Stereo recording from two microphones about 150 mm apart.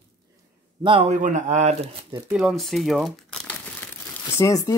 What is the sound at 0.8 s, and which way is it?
Speech, 35° right (ahead or behind).